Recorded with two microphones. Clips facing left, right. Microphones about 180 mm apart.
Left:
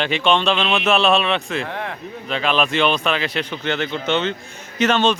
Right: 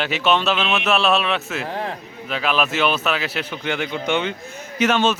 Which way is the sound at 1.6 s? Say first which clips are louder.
Right 1 dB; 35° right (ahead or behind).